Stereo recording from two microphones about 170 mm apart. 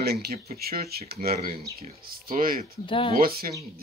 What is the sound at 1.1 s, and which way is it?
Speech, 65° right (ahead or behind).